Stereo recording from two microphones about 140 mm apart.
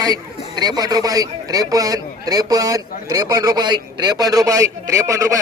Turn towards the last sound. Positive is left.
turn(degrees=-20)  # may be behind; listen again after turning